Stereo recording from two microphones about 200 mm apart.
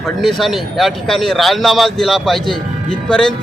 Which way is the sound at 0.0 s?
Centre (ahead or behind).